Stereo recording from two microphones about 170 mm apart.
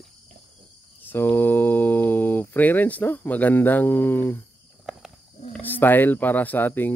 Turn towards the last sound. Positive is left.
turn(degrees=10)  # may be behind; listen again after turning